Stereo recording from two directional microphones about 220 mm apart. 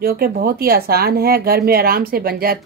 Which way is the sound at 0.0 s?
45° right (ahead or behind).